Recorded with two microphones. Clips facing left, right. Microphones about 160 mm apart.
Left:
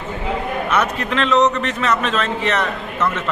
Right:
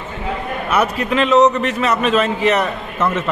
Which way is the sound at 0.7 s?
10° right (ahead or behind).